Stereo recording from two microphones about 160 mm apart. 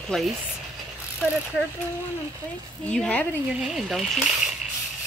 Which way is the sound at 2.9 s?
5° left (ahead or behind).